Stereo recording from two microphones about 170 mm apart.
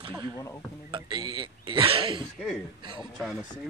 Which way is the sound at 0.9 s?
30° right (ahead or behind).